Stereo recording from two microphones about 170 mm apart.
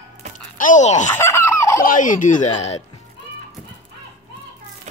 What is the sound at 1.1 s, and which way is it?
Fowl, 15° left (ahead or behind).